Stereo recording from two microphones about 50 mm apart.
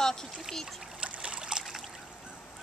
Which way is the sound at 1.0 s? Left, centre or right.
Right.